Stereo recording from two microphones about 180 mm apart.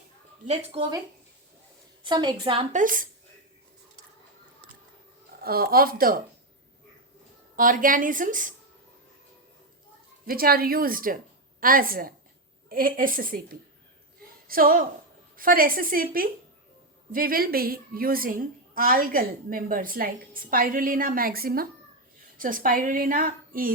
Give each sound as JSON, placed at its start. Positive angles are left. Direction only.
{"t": 0.4, "sound": "speech", "side_deg": -40}
{"t": 2.0, "sound": "a woman's voice", "side_deg": -25}
{"t": 2.7, "sound": "a woman's voice", "side_deg": -50}
{"t": 5.4, "sound": "speech", "side_deg": -55}
{"t": 7.5, "sound": "a woman's voice", "side_deg": -50}
{"t": 10.2, "sound": "a woman's voice", "side_deg": -55}